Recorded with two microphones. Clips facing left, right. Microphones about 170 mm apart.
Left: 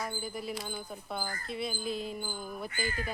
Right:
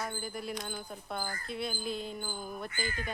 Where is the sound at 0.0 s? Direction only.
Centre (ahead or behind).